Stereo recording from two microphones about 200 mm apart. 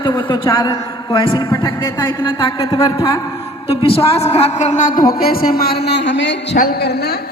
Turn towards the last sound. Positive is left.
turn(degrees=55)  # may be behind; listen again after turning